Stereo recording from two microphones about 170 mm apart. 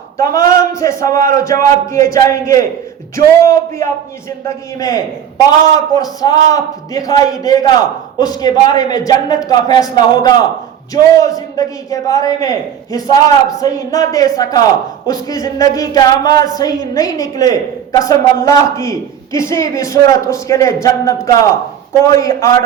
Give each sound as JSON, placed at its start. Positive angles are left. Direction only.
{"t": 0.3, "sound": "a woman's voice", "side_deg": 20}